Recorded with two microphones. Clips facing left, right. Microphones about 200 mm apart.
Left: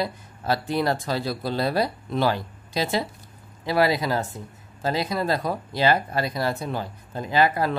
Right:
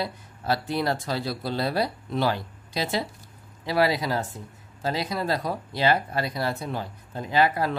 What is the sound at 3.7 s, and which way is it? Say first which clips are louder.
Speech: left 2 dB; 50° left (ahead or behind).